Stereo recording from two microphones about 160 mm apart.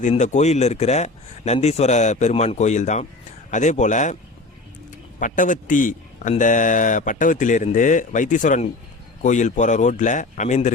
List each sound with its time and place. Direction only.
0.0 s speech: 45° left (ahead or behind)
5.2 s a man's voice: 55° left (ahead or behind)